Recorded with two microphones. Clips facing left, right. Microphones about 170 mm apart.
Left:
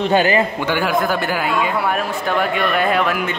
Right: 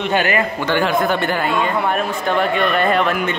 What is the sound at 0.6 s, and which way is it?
Speech, 10° left (ahead or behind).